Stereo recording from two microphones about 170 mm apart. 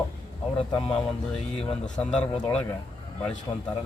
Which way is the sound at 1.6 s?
5° left (ahead or behind).